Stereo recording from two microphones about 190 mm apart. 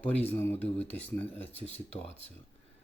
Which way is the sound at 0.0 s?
10° left (ahead or behind).